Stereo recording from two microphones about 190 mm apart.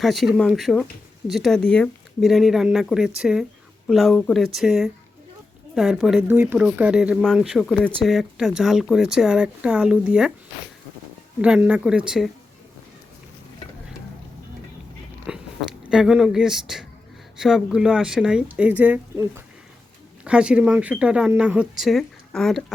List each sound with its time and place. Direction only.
0.0 s speech: centre (ahead or behind)
11.4 s speech: 5° right (ahead or behind)
15.3 s biting: 5° right (ahead or behind)
15.9 s speech: 5° right (ahead or behind)
20.2 s speech: 5° right (ahead or behind)